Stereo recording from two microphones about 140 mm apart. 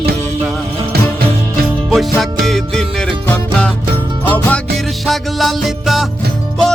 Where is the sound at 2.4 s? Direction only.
5° left (ahead or behind).